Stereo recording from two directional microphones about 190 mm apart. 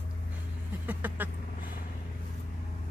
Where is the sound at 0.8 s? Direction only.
10° right (ahead or behind).